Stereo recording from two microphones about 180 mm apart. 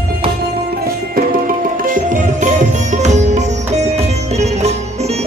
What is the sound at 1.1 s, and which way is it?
Music, 50° right (ahead or behind).